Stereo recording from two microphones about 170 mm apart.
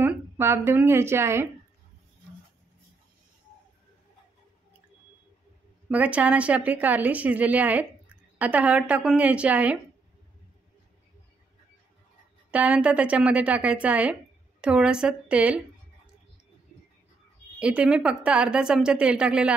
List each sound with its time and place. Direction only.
0.0 s a woman's voice: 15° right (ahead or behind)
5.9 s speech: 10° right (ahead or behind)
12.4 s a woman's voice: 5° right (ahead or behind)
17.6 s a woman's voice: 5° right (ahead or behind)